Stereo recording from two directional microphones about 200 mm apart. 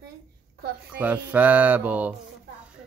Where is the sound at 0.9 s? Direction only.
5° right (ahead or behind).